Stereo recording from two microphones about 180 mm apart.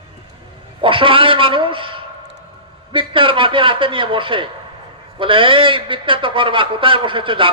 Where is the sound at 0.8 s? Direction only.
30° right (ahead or behind).